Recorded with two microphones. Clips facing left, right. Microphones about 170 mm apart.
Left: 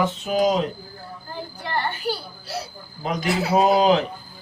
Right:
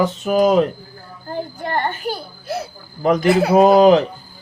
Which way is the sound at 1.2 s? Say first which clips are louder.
Right 8 dB; 50° right (ahead or behind).